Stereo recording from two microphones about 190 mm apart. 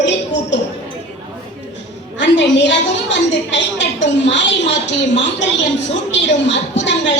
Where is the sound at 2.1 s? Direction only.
70° left (ahead or behind).